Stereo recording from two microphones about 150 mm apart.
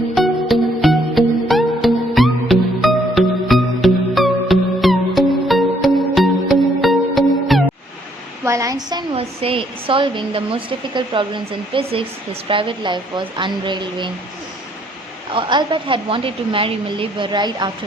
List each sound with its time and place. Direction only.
0.2 s music: centre (ahead or behind)
8.4 s a sound: 20° right (ahead or behind)
9.1 s speech: 40° right (ahead or behind)
15.3 s speech: 30° right (ahead or behind)